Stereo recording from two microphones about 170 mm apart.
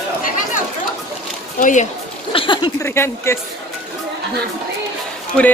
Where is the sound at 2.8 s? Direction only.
15° left (ahead or behind).